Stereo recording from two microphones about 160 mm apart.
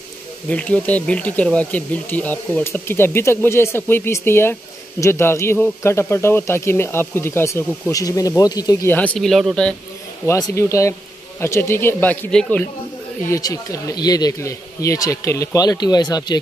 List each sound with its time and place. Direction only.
0.5 s speech: 10° left (ahead or behind)
8.9 s speech: 10° left (ahead or behind)
10.2 s speech: 20° left (ahead or behind)
13.3 s speech: 20° left (ahead or behind)